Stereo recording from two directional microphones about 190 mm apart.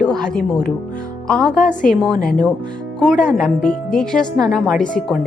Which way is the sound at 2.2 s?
45° left (ahead or behind).